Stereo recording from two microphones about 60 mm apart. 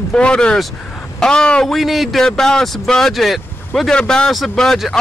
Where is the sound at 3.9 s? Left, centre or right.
Centre.